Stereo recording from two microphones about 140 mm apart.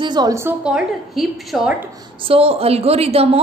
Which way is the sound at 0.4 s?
10° right (ahead or behind).